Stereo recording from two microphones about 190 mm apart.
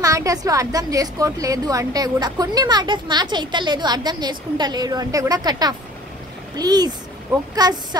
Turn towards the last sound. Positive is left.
turn(degrees=-20)  # may be behind; listen again after turning